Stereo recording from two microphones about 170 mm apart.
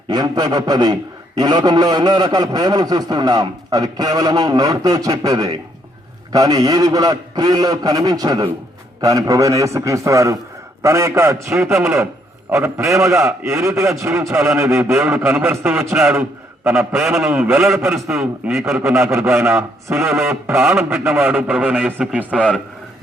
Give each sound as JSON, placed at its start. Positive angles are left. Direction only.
{"t": 0.1, "sound": "a man's voice", "side_deg": -25}
{"t": 14.9, "sound": "a man's voice", "side_deg": 0}
{"t": 18.8, "sound": "a man's voice", "side_deg": -15}
{"t": 20.6, "sound": "a man's voice", "side_deg": 0}